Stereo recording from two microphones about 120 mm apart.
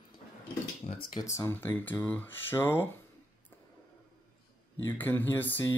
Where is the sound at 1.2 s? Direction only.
25° left (ahead or behind).